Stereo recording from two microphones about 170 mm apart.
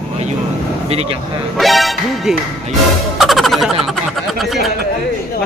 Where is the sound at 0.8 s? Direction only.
35° right (ahead or behind).